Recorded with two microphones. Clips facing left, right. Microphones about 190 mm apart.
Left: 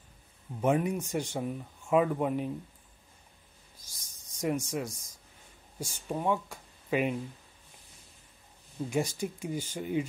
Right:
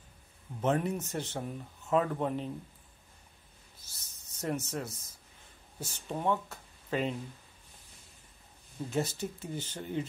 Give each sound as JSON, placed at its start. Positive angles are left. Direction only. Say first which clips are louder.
{"t": 0.6, "sound": "speech", "louder": "left 2 dB", "side_deg": 10}
{"t": 3.7, "sound": "writing", "louder": "left 1 dB", "side_deg": 10}
{"t": 5.8, "sound": "speech", "louder": "left 3 dB", "side_deg": 10}
{"t": 8.9, "sound": "speech", "louder": "left 2 dB", "side_deg": 10}